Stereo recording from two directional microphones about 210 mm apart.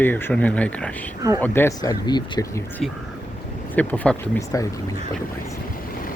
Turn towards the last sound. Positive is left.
turn(degrees=10)  # may be behind; listen again after turning